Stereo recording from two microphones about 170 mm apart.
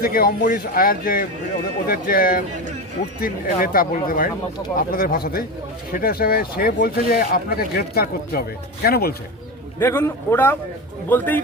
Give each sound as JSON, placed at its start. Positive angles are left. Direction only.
{"t": 0.0, "sound": "speech", "side_deg": 60}
{"t": 9.7, "sound": "a man's voice", "side_deg": 15}